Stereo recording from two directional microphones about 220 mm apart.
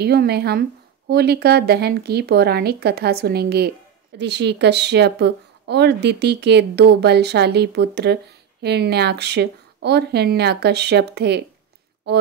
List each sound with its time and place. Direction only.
0.0 s speech: 45° right (ahead or behind)